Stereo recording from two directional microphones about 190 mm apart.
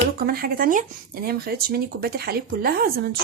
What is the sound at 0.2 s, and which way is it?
Speech, 50° right (ahead or behind).